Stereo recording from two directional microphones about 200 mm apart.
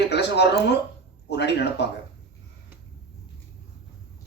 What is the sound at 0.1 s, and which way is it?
Speech, 55° left (ahead or behind).